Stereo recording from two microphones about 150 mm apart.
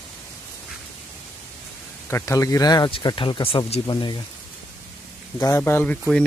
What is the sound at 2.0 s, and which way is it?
Speech, 20° left (ahead or behind).